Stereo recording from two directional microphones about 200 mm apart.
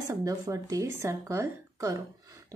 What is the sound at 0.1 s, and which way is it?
A woman's voice, 15° right (ahead or behind).